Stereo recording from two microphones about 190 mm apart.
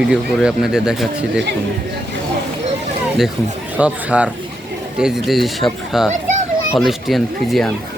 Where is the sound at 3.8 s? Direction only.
5° right (ahead or behind).